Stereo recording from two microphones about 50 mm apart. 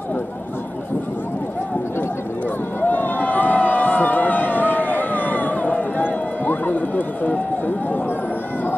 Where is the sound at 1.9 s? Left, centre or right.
Left.